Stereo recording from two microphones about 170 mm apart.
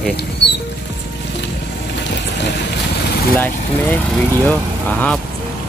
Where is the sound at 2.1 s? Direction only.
90° left.